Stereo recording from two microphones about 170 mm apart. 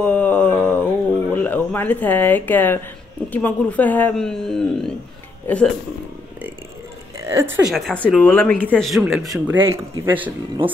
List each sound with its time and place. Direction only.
0.0 s a sound: 10° left (ahead or behind)
1.3 s speech: 10° left (ahead or behind)
7.2 s a woman's voice: 15° right (ahead or behind)
7.7 s speech: 5° left (ahead or behind); by 10.3 s 10° right (ahead or behind)